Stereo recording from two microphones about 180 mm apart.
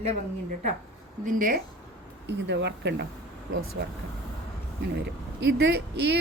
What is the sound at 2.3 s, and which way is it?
Speech, 75° right (ahead or behind).